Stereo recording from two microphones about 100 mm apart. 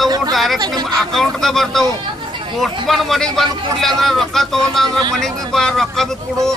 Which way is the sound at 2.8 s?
Centre (ahead or behind).